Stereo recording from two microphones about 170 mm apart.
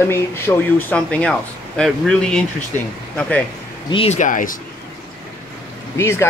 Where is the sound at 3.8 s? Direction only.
35° left (ahead or behind); by 4.6 s 50° left (ahead or behind).